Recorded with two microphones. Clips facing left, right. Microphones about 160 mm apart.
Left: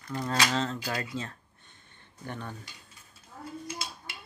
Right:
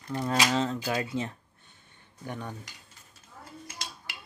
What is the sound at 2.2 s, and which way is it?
Speech, 10° right (ahead or behind).